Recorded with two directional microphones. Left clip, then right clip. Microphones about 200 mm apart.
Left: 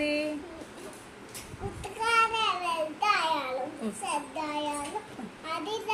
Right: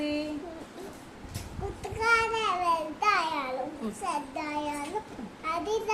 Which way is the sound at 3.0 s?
20° right (ahead or behind).